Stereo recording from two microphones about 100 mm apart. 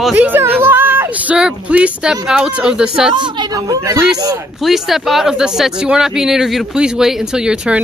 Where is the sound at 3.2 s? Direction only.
50° right (ahead or behind).